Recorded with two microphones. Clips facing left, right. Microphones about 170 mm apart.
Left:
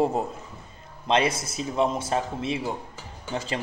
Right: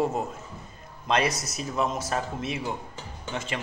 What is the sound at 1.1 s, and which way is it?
A man's voice, 25° left (ahead or behind).